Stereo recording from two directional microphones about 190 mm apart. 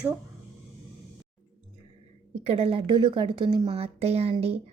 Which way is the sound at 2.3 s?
30° right (ahead or behind).